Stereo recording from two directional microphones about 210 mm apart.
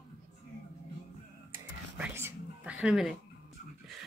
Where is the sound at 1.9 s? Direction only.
10° right (ahead or behind).